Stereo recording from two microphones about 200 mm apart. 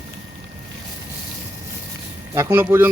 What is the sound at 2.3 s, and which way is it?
Speech, 10° right (ahead or behind).